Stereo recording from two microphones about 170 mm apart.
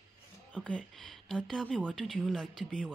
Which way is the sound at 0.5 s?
5° left (ahead or behind).